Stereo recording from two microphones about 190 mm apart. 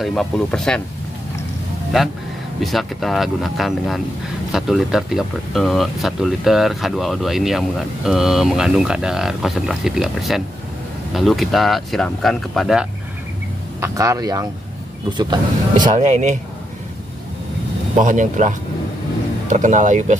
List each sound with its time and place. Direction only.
0.0 s speech: 5° left (ahead or behind)
2.6 s speech: centre (ahead or behind)
13.7 s speech: 15° right (ahead or behind)
15.7 s speech: 40° right (ahead or behind)
17.9 s speech: 40° right (ahead or behind)